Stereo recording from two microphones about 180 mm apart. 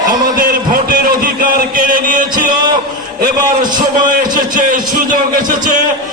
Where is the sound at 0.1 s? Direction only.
50° right (ahead or behind).